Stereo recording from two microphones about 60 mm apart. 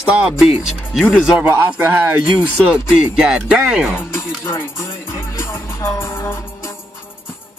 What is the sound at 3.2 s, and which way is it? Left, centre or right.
Speech, centre.